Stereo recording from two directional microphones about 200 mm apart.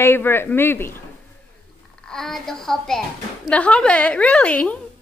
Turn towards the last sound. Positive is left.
turn(degrees=5)  # may be behind; listen again after turning